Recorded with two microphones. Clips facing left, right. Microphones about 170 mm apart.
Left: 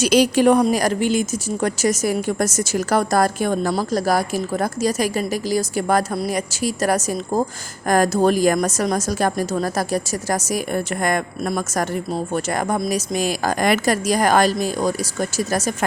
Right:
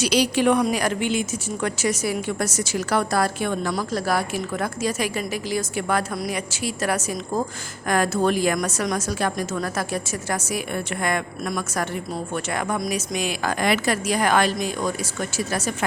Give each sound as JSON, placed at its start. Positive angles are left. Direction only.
{"t": 0.0, "sound": "a woman's voice", "side_deg": 45}